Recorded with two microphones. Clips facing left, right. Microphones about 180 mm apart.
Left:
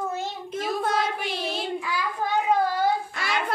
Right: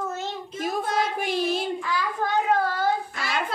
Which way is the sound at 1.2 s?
50° right (ahead or behind).